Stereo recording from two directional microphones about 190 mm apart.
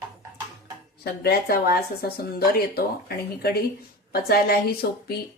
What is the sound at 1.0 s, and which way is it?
Speech, 55° left (ahead or behind).